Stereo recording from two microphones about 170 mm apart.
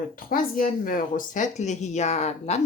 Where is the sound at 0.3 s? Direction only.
55° left (ahead or behind).